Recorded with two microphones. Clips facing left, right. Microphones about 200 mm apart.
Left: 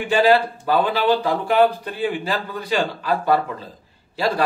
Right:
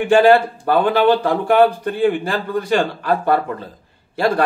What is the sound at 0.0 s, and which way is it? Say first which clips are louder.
Speech: right 5 dB; 50° right (ahead or behind).